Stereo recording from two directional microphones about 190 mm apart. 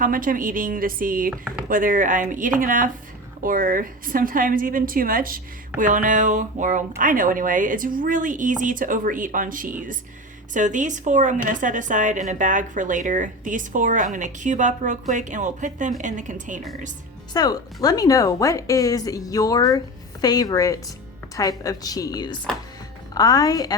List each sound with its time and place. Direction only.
0.0 s a woman's voice: 45° right (ahead or behind)
17.3 s a woman's voice: 20° left (ahead or behind)